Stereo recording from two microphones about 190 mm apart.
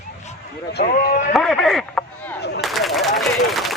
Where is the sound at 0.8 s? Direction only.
50° left (ahead or behind).